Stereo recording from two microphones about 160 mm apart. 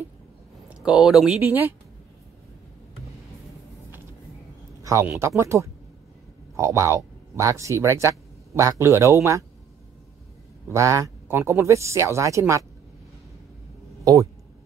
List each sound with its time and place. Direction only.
0.7 s speech: 5° right (ahead or behind)
5.2 s speech: 15° right (ahead or behind)
10.7 s speech: 20° right (ahead or behind)